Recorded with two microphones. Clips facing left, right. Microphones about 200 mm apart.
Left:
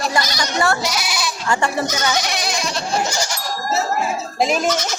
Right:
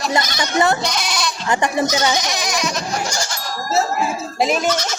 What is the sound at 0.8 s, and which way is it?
Goat, 5° left (ahead or behind).